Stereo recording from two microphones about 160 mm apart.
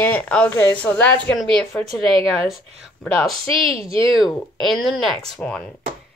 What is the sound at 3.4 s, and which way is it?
Speech, 35° right (ahead or behind).